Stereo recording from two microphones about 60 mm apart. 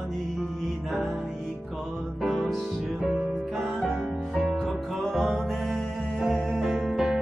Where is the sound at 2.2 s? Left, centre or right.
Centre.